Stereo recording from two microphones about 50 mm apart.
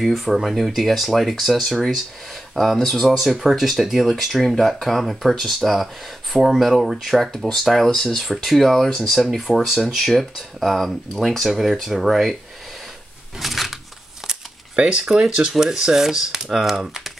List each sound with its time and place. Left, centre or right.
0.0 s speech: centre
13.4 s a sound: centre
14.8 s speech: centre